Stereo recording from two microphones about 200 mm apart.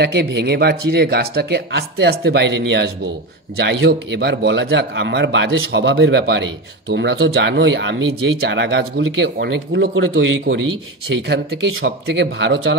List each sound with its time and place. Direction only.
0.0 s speech: 55° right (ahead or behind)